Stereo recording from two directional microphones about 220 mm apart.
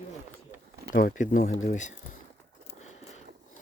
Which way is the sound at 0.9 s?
40° left (ahead or behind).